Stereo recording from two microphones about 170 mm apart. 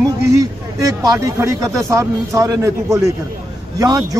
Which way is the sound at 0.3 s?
20° right (ahead or behind).